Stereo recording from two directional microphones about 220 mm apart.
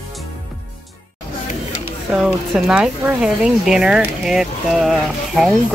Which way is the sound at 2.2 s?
Centre (ahead or behind).